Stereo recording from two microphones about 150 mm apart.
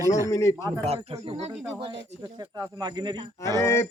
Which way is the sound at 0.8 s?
40° right (ahead or behind).